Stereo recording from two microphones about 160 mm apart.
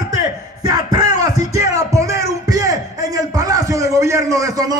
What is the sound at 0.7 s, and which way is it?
Music, 25° right (ahead or behind).